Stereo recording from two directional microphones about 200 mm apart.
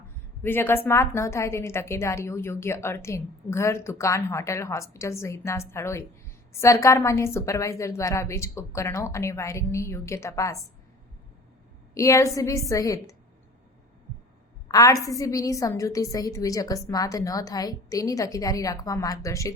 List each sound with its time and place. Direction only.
0.4 s a woman's voice: 10° left (ahead or behind)
11.9 s a woman's voice: 15° left (ahead or behind)
14.7 s a woman's voice: 15° left (ahead or behind)